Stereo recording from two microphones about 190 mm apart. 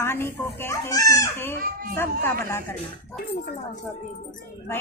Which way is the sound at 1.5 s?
50° right (ahead or behind).